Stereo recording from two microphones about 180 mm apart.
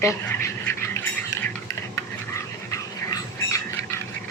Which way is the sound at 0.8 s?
15° left (ahead or behind).